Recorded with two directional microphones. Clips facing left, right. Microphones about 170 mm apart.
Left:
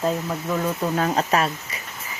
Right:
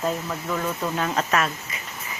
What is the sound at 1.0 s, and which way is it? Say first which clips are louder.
Speech: left 2 dB; 35° left (ahead or behind).